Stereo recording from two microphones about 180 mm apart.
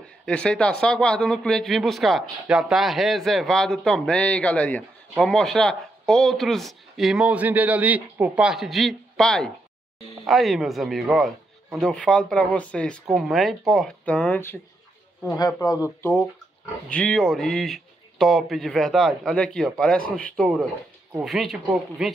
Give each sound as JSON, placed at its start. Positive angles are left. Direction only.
{"t": 0.2, "sound": "speech", "side_deg": 5}
{"t": 16.9, "sound": "speech", "side_deg": 5}